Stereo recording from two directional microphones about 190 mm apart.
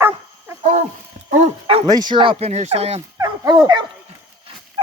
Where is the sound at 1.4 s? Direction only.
30° right (ahead or behind).